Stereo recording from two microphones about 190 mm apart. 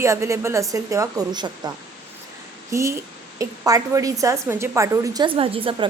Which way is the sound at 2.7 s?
15° right (ahead or behind).